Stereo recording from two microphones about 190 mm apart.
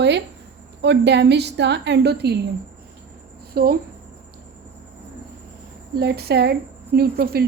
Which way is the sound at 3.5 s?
50° right (ahead or behind).